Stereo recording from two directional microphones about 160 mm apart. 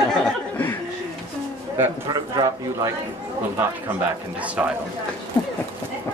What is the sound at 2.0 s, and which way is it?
A man's voice, 25° right (ahead or behind).